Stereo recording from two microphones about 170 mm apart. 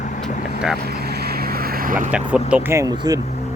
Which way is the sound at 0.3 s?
50° left (ahead or behind).